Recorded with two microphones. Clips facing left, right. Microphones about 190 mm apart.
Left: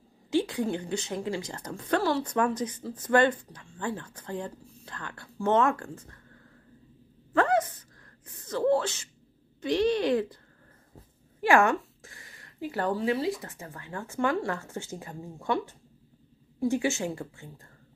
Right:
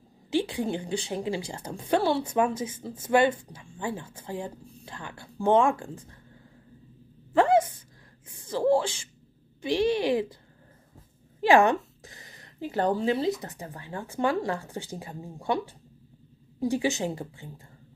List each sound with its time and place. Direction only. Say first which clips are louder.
0.5 s speech: even; 10° right (ahead or behind)
2.6 s speech: left 1 dB; 25° right (ahead or behind)
2.9 s speech: right 1 dB; 10° right (ahead or behind)
7.3 s a sound: right 3 dB; 10° right (ahead or behind)
8.3 s speech: right 1 dB; 10° right (ahead or behind)
11.6 s a sound: right 2 dB; 20° right (ahead or behind)
12.9 s speech: right 2 dB; 25° right (ahead or behind)
15.0 s a woman's voice: right 1 dB; 15° right (ahead or behind)